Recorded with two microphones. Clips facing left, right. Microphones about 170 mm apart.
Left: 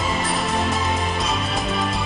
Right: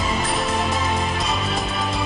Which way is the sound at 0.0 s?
Centre (ahead or behind).